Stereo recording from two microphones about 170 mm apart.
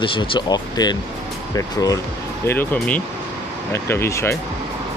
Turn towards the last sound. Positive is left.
turn(degrees=15)  # may be behind; listen again after turning